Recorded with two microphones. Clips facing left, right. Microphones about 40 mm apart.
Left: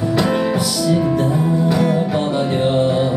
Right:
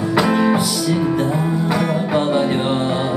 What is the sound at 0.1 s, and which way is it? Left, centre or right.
Music, centre.